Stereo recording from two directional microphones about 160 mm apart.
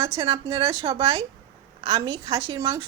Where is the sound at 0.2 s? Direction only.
25° right (ahead or behind).